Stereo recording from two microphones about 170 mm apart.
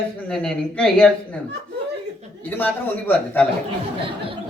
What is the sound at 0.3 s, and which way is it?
A man's voice, 5° left (ahead or behind).